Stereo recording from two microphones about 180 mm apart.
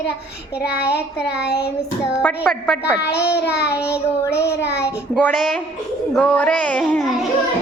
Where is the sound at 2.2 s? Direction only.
5° left (ahead or behind).